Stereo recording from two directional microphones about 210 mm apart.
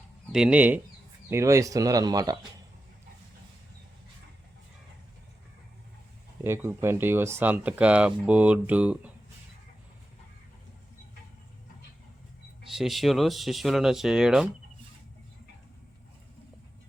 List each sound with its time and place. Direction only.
0.3 s speech: 5° right (ahead or behind)
6.4 s speech: 10° right (ahead or behind)
12.6 s speech: centre (ahead or behind)